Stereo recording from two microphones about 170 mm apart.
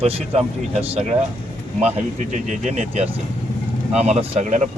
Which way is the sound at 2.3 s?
45° right (ahead or behind).